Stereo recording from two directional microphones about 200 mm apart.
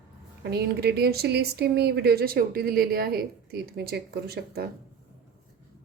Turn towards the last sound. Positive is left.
turn(degrees=-55)  # may be behind; listen again after turning